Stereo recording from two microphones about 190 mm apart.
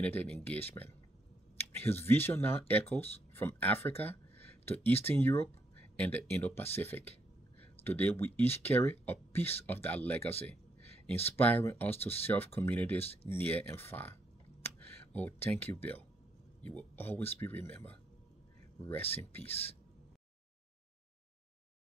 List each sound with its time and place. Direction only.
0.0 s speech: 10° left (ahead or behind)
14.6 s a sound: 10° left (ahead or behind)
16.6 s speech: 10° left (ahead or behind)
19.1 s speech: 10° left (ahead or behind)